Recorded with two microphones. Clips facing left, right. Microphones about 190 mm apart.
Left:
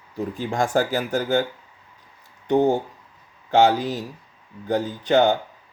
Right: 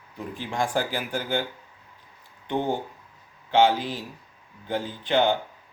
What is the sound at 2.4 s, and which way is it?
Speech, 45° left (ahead or behind).